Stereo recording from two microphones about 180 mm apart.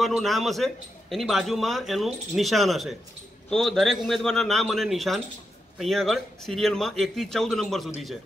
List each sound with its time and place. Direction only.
0.0 s a man's voice: centre (ahead or behind)